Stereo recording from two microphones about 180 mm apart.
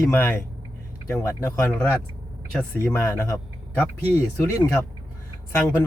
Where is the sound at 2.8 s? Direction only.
15° left (ahead or behind).